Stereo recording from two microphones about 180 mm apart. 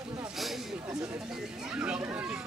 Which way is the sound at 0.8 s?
20° right (ahead or behind).